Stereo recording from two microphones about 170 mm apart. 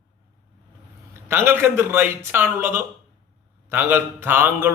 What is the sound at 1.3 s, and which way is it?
A man's voice, 15° right (ahead or behind).